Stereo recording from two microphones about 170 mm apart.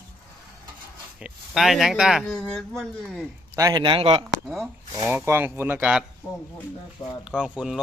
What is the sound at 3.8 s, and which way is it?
Speech, 30° right (ahead or behind).